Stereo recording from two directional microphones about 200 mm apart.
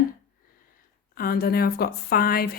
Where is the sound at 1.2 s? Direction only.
50° left (ahead or behind).